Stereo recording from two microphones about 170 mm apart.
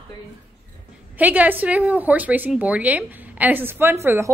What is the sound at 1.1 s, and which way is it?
Speech, 10° right (ahead or behind).